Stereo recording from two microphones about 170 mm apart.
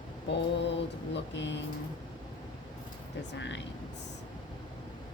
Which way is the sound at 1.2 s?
90° left.